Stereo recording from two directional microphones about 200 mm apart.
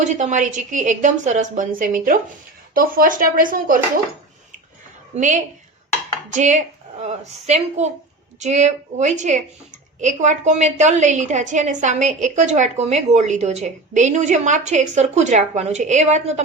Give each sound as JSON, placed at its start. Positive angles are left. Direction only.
{"t": 0.0, "sound": "a woman's voice", "side_deg": -35}
{"t": 5.1, "sound": "a woman's voice", "side_deg": -40}